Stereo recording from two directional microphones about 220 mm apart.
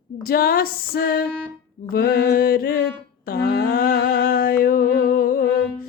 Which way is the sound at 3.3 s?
45° left (ahead or behind).